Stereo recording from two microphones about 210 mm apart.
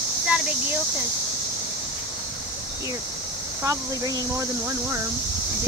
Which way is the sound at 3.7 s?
20° right (ahead or behind).